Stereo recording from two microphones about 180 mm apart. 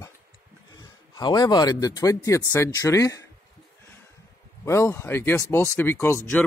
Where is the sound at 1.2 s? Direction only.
25° left (ahead or behind).